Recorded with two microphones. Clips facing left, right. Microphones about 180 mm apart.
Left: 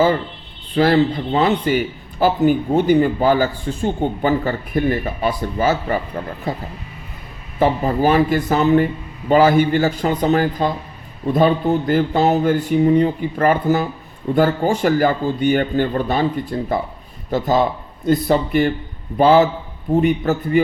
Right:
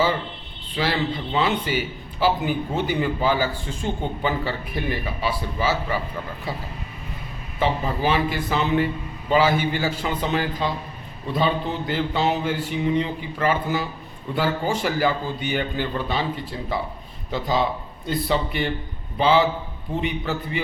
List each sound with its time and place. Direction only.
0.8 s a man's voice: 45° left (ahead or behind)